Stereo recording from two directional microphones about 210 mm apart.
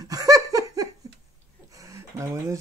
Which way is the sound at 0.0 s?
15° right (ahead or behind).